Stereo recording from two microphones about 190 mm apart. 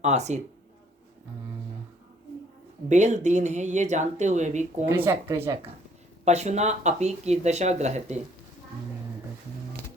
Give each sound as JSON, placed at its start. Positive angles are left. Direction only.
{"t": 0.0, "sound": "speech", "side_deg": -35}
{"t": 2.9, "sound": "speech", "side_deg": -40}
{"t": 4.9, "sound": "speech", "side_deg": -15}
{"t": 6.2, "sound": "speech", "side_deg": -35}